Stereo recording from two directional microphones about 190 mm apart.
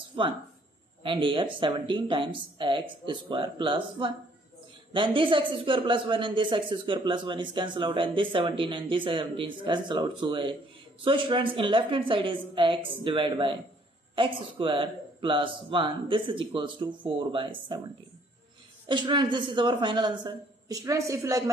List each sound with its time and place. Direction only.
1.0 s speech: 25° right (ahead or behind)
18.9 s speech: 25° right (ahead or behind)